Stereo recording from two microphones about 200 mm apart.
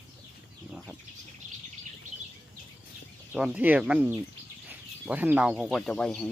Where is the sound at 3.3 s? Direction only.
5° right (ahead or behind).